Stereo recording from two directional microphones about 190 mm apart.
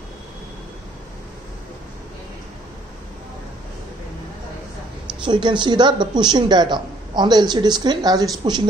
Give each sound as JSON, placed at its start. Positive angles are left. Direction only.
{"t": 5.2, "sound": "speech", "side_deg": -25}